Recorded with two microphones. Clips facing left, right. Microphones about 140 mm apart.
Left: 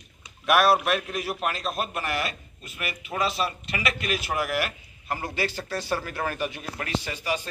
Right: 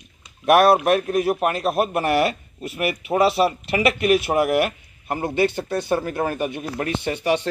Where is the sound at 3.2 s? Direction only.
65° right (ahead or behind).